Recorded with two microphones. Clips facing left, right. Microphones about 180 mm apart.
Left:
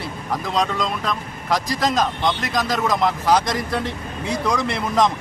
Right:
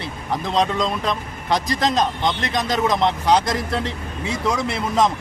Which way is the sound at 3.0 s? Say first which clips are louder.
Left 1 dB; 25° right (ahead or behind).